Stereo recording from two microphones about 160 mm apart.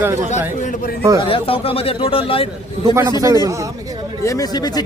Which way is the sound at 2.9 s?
20° right (ahead or behind).